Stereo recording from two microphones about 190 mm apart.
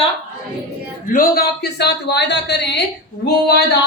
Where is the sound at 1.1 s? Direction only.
50° left (ahead or behind).